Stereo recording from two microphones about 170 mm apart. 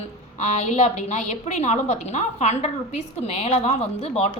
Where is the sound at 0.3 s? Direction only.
40° left (ahead or behind).